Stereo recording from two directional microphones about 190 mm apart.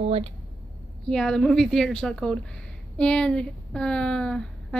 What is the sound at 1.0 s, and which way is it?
A woman's voice, 5° left (ahead or behind).